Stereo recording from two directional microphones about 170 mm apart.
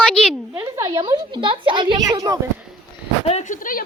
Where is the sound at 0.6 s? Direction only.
20° right (ahead or behind).